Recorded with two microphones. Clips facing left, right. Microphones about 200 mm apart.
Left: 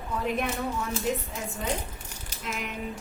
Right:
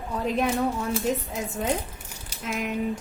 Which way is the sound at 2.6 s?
45° right (ahead or behind).